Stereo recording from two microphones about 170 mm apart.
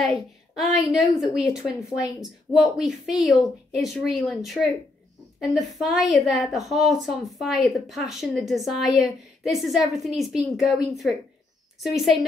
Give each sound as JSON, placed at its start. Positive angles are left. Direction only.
{"t": 0.0, "sound": "a woman's voice", "side_deg": 0}